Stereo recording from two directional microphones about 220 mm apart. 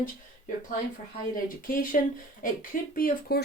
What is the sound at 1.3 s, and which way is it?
Speech, 40° left (ahead or behind).